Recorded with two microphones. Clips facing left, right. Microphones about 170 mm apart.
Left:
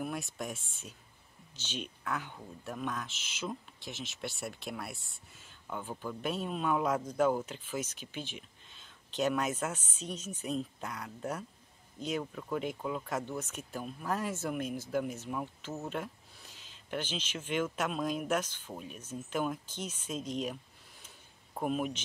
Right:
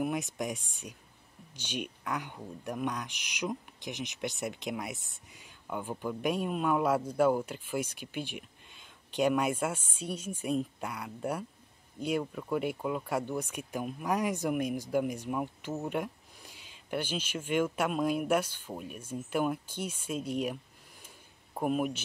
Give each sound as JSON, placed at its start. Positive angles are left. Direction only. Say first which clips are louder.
{"t": 0.0, "sound": "speech", "louder": "right 5 dB", "side_deg": -15}
{"t": 21.5, "sound": "speech", "louder": "right 3 dB", "side_deg": -5}